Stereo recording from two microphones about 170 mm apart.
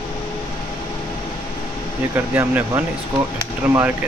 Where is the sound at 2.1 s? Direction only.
10° right (ahead or behind).